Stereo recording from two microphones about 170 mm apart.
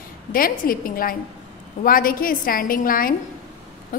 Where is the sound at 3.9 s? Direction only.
55° left (ahead or behind).